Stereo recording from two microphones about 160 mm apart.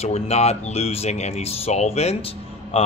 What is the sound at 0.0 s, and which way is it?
Speech, 40° left (ahead or behind).